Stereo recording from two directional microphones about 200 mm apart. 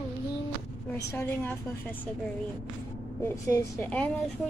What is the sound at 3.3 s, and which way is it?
Speech, 15° left (ahead or behind).